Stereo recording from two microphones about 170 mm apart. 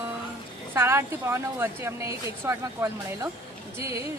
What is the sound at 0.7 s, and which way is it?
A woman's voice, 15° right (ahead or behind).